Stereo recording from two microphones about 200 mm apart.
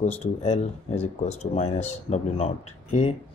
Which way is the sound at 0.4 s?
35° left (ahead or behind).